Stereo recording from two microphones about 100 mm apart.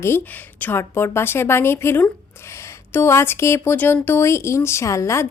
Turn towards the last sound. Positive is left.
turn(degrees=30)  # may be behind; listen again after turning